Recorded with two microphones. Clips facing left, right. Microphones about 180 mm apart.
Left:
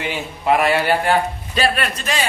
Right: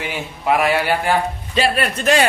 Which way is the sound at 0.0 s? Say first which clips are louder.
Left 1 dB; 5° right (ahead or behind).